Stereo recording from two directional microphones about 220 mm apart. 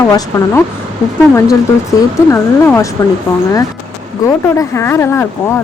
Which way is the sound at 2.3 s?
15° left (ahead or behind).